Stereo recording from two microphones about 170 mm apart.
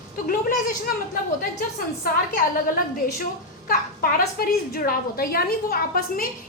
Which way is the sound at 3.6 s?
55° left (ahead or behind).